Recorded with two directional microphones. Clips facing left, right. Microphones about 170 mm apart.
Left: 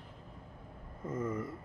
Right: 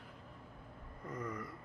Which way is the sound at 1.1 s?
25° left (ahead or behind).